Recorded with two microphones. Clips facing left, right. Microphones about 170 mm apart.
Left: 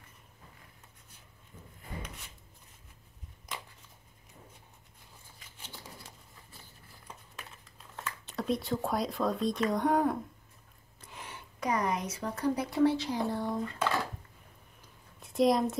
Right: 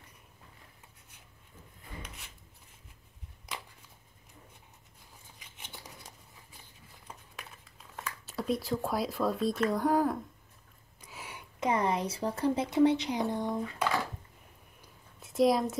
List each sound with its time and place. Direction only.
7.9 s speech: 5° right (ahead or behind)
11.1 s a sound: 10° right (ahead or behind)
11.6 s speech: 25° right (ahead or behind)
15.2 s a woman's voice: centre (ahead or behind)